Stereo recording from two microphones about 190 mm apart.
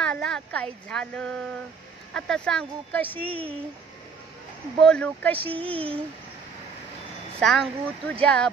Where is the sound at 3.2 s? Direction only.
30° right (ahead or behind).